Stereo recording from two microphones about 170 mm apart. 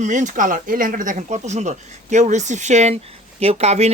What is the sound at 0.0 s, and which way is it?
Speech, 45° right (ahead or behind).